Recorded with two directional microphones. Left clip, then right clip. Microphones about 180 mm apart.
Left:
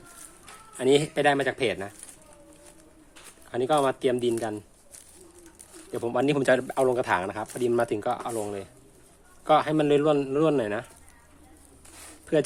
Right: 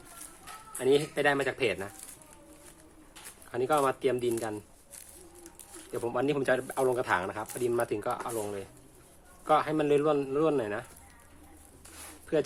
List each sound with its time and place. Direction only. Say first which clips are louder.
0.8 s speech: left 4 dB; 50° left (ahead or behind)
3.5 s speech: left 3 dB; 45° left (ahead or behind)
5.9 s speech: left 4 dB; 45° left (ahead or behind)
12.2 s a sound: left 5 dB; 50° left (ahead or behind)